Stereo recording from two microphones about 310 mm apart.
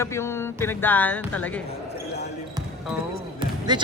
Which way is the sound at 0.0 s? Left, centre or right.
Centre.